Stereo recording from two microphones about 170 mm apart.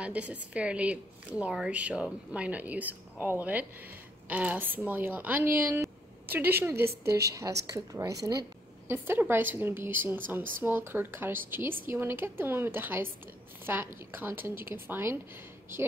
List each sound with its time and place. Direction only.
0.0 s a woman's voice: 10° right (ahead or behind)